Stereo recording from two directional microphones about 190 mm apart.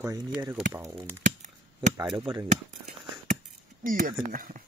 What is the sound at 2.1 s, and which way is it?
Speech, 25° right (ahead or behind).